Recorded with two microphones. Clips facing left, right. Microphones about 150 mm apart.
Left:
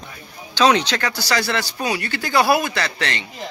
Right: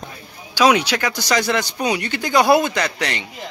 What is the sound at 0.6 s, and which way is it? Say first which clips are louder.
Speech: right 1 dB; 10° right (ahead or behind).